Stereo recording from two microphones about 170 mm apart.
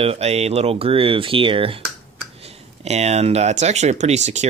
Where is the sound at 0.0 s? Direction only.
35° right (ahead or behind).